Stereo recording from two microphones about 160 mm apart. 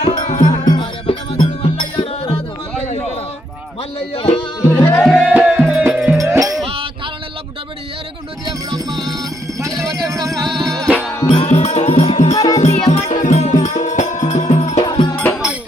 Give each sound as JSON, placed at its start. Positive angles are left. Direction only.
{"t": 0.0, "sound": "music", "side_deg": 25}
{"t": 1.0, "sound": "music", "side_deg": 35}
{"t": 4.1, "sound": "music", "side_deg": 35}
{"t": 4.8, "sound": "music", "side_deg": 15}
{"t": 5.0, "sound": "music", "side_deg": 0}
{"t": 6.1, "sound": "music", "side_deg": -20}
{"t": 9.0, "sound": "music", "side_deg": -20}
{"t": 10.7, "sound": "music", "side_deg": 0}
{"t": 11.3, "sound": "music", "side_deg": 40}
{"t": 12.3, "sound": "music", "side_deg": 25}
{"t": 12.5, "sound": "music", "side_deg": 45}
{"t": 14.8, "sound": "music", "side_deg": 30}
{"t": 15.1, "sound": "music", "side_deg": 10}